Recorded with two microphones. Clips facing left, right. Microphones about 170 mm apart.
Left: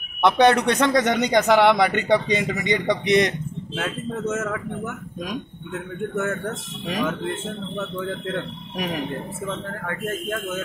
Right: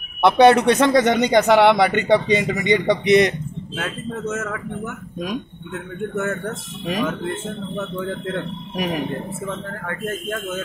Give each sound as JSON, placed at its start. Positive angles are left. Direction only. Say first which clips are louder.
{"t": 0.2, "sound": "speech", "louder": "right 4 dB", "side_deg": -5}
{"t": 3.7, "sound": "speech", "louder": "even", "side_deg": 20}
{"t": 6.9, "sound": "speech", "louder": "right 2 dB", "side_deg": -5}